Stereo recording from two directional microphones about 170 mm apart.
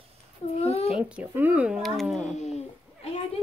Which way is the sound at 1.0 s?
5° right (ahead or behind).